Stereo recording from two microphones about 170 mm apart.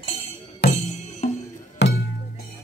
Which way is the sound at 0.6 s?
70° left (ahead or behind).